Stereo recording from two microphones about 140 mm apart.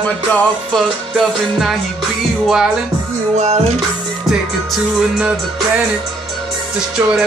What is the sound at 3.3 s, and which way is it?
Music, 50° right (ahead or behind).